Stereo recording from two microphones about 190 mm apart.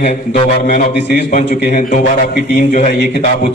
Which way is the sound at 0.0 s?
35° left (ahead or behind).